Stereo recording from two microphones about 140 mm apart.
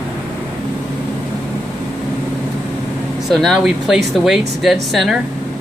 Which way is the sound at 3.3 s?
Centre (ahead or behind).